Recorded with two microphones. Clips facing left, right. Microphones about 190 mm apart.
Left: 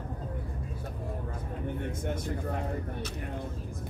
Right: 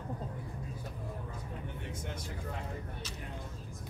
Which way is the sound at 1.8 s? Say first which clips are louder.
Left 8 dB; 55° left (ahead or behind).